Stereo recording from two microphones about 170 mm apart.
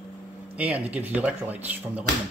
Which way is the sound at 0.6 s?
10° right (ahead or behind).